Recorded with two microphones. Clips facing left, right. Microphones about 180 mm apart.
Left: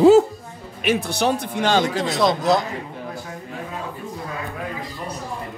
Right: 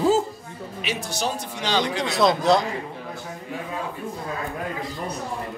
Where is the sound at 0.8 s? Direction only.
60° left (ahead or behind).